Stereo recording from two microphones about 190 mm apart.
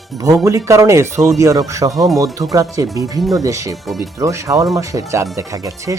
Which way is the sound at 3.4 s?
15° right (ahead or behind).